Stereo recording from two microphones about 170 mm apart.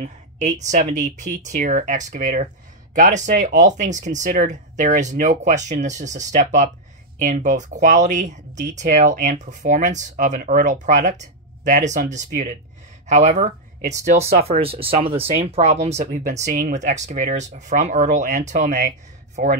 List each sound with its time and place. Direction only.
0.0 s speech: 45° right (ahead or behind)